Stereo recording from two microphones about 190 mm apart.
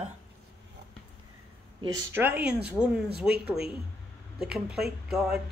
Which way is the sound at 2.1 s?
10° right (ahead or behind).